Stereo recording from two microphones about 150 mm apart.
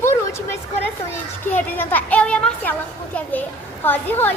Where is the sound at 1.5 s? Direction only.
10° left (ahead or behind).